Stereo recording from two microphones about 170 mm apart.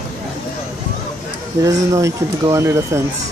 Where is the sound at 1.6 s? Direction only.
20° right (ahead or behind).